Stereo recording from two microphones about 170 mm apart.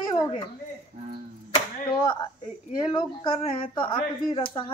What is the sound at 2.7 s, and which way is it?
Speech, 25° left (ahead or behind).